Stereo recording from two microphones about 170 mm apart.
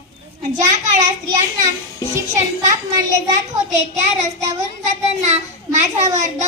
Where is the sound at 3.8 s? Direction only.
40° right (ahead or behind).